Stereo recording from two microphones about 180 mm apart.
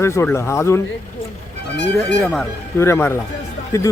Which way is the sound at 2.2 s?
5° left (ahead or behind).